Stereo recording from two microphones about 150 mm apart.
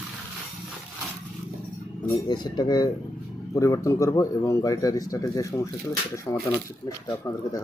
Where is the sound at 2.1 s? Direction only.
30° left (ahead or behind).